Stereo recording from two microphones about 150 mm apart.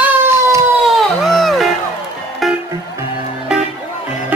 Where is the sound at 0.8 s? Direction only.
Centre (ahead or behind).